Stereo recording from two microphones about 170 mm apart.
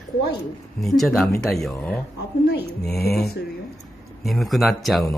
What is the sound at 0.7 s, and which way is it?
Speech, centre (ahead or behind).